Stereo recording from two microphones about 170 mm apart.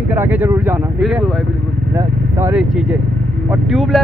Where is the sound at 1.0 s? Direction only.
Centre (ahead or behind).